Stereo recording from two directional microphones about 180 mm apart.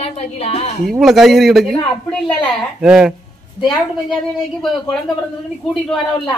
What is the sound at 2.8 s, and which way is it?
Speech, 5° right (ahead or behind).